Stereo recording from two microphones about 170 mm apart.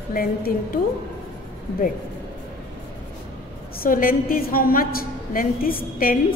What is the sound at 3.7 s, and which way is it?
A woman's voice, 55° left (ahead or behind).